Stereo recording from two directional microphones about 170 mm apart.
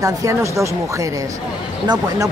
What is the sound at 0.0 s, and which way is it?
Speech, 20° right (ahead or behind).